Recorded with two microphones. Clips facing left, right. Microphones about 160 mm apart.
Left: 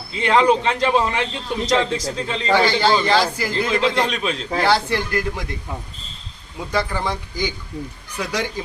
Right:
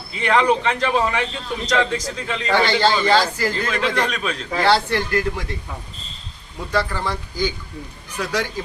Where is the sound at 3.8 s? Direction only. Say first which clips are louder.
Left 2 dB; 25° left (ahead or behind).